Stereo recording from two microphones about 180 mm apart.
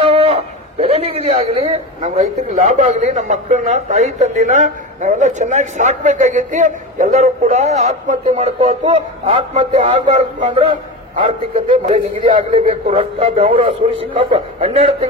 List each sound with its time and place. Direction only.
0.1 s a man's voice: 30° right (ahead or behind)
11.7 s a man's voice: 30° right (ahead or behind)